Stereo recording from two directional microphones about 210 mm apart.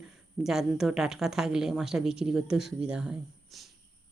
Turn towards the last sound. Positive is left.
turn(degrees=0)  # may be behind; listen again after turning